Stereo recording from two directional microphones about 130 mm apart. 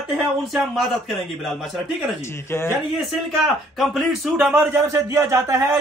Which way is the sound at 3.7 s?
Centre (ahead or behind).